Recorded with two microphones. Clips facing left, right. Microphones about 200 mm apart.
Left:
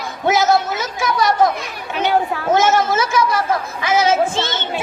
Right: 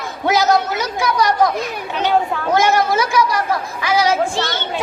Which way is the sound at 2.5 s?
15° right (ahead or behind).